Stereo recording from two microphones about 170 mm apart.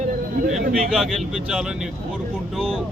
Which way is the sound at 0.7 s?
5° right (ahead or behind).